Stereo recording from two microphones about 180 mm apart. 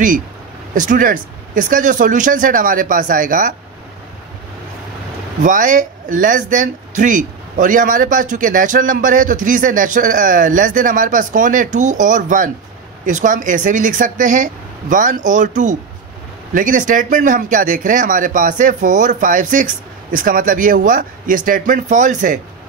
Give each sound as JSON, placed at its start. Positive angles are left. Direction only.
{"t": 0.7, "sound": "speech", "side_deg": -45}
{"t": 5.4, "sound": "speech", "side_deg": -45}